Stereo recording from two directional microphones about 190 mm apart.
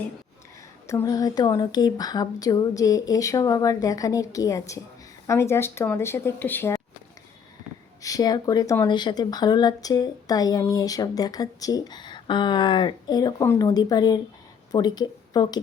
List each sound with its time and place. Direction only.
0.9 s speech: 15° left (ahead or behind)
8.0 s a woman's voice: 20° left (ahead or behind)